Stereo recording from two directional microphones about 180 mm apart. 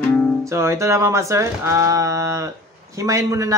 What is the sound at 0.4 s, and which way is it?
A woman's voice, 15° right (ahead or behind).